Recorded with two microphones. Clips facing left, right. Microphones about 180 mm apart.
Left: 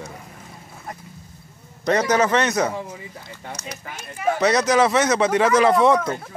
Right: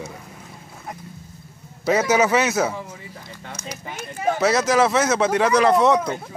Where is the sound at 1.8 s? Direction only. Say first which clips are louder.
Right 1 dB; 5° right (ahead or behind).